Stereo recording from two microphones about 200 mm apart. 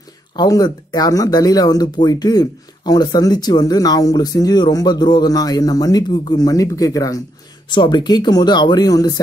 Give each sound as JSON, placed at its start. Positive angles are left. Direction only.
{"t": 0.4, "sound": "speech", "side_deg": 20}